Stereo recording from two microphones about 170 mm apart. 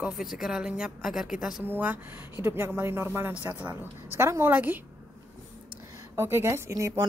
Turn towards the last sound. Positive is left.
turn(degrees=-15)  # may be behind; listen again after turning